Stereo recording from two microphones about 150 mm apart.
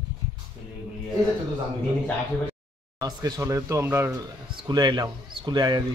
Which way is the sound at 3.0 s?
20° right (ahead or behind).